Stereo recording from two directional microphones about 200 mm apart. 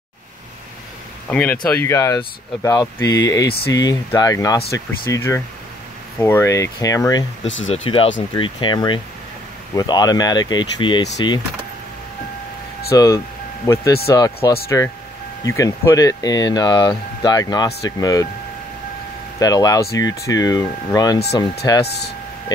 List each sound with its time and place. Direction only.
1.3 s speech: 5° left (ahead or behind)
7.4 s speech: 70° left (ahead or behind)
7.7 s speech: 30° left (ahead or behind)
12.9 s speech: 15° left (ahead or behind)
19.4 s speech: 20° left (ahead or behind)
21.8 s speech: 55° left (ahead or behind)